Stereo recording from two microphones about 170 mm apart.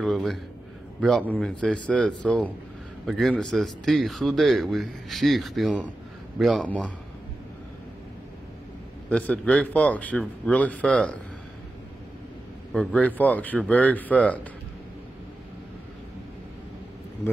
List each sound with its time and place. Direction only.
0.0 s speech: centre (ahead or behind)
9.1 s speech: 5° left (ahead or behind)
12.7 s speech: 5° left (ahead or behind)